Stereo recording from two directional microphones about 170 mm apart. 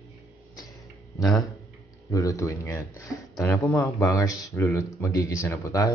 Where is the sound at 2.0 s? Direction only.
20° left (ahead or behind).